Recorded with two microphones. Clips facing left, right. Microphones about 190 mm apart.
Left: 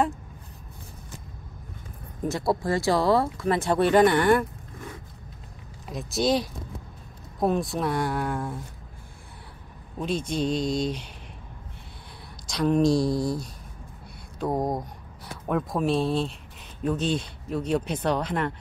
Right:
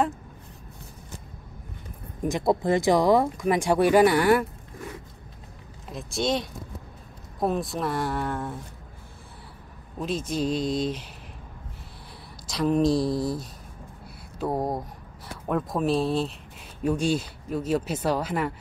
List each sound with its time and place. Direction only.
2.2 s speech: 15° right (ahead or behind)
5.9 s speech: centre (ahead or behind)
9.9 s a man's voice: centre (ahead or behind)
12.4 s speech: centre (ahead or behind)